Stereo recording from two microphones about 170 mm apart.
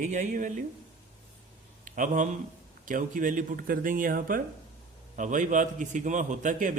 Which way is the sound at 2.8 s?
50° right (ahead or behind).